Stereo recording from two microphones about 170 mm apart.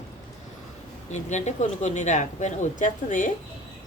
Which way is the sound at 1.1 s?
45° left (ahead or behind).